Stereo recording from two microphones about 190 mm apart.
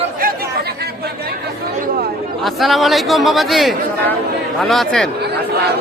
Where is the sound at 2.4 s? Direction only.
Centre (ahead or behind).